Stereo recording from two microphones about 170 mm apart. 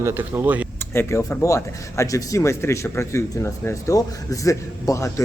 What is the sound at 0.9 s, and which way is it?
A man's voice, 15° left (ahead or behind).